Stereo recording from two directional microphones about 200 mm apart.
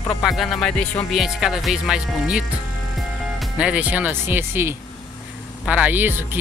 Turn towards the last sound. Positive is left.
turn(degrees=-10)  # may be behind; listen again after turning